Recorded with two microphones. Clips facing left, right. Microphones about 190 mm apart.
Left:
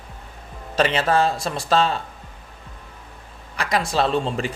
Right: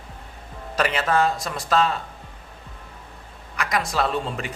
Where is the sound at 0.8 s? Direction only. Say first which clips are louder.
Left 2 dB; 25° left (ahead or behind).